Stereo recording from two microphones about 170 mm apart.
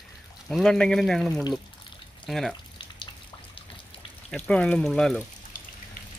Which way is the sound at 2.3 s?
Centre (ahead or behind).